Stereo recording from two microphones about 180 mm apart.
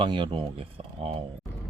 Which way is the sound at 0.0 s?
25° right (ahead or behind).